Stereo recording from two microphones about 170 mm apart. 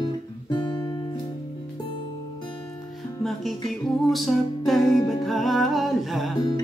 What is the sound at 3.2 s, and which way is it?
Music, centre (ahead or behind).